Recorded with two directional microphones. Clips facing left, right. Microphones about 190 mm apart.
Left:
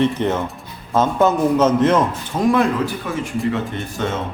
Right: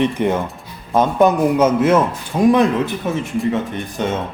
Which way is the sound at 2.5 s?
20° right (ahead or behind).